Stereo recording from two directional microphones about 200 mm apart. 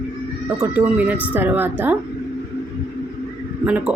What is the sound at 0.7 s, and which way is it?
Speech, 10° right (ahead or behind).